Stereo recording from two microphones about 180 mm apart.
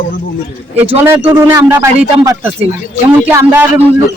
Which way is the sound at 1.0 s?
10° right (ahead or behind).